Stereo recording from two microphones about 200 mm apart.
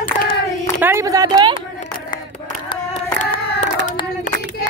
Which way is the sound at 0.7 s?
15° right (ahead or behind).